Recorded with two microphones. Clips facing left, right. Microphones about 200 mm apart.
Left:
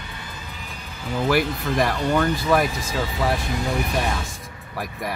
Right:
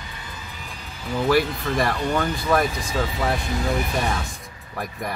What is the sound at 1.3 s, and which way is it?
Speech, 5° left (ahead or behind).